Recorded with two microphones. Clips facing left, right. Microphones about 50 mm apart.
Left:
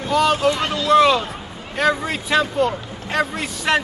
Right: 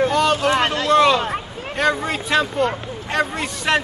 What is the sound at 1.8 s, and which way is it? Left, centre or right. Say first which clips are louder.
Speech: even; centre.